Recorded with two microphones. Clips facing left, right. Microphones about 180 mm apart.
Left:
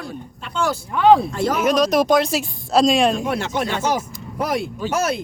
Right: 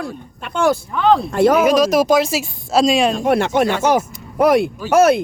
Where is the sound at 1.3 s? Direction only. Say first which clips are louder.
Right 8 dB; 60° right (ahead or behind).